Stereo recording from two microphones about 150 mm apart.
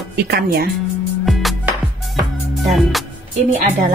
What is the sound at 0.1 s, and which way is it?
Speech, 90° right.